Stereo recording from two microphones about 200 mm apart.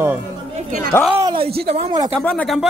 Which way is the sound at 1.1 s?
25° right (ahead or behind).